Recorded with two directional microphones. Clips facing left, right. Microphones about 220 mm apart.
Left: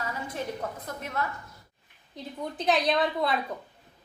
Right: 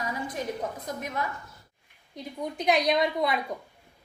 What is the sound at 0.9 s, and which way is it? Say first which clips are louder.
A woman's voice: right 1 dB; 15° right (ahead or behind).